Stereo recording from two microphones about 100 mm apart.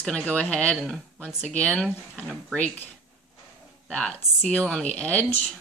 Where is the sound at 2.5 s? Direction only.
15° left (ahead or behind).